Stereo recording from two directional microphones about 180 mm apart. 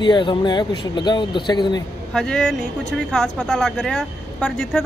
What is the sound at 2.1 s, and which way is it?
Speech, 5° left (ahead or behind).